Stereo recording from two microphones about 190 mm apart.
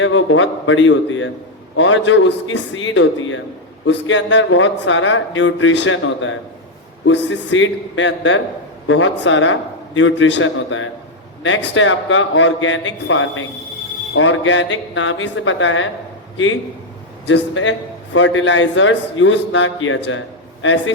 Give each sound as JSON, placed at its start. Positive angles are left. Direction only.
{"t": 0.0, "sound": "speech", "side_deg": 90}
{"t": 17.2, "sound": "speech", "side_deg": 80}